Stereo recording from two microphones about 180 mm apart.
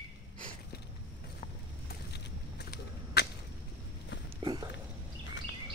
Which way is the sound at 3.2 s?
65° left (ahead or behind).